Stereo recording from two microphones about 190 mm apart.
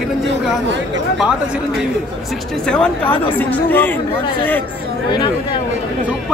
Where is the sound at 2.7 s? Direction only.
5° left (ahead or behind).